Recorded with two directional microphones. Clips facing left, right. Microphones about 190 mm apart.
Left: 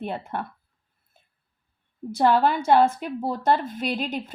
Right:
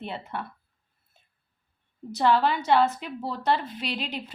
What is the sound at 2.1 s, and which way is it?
A woman's voice, 50° left (ahead or behind).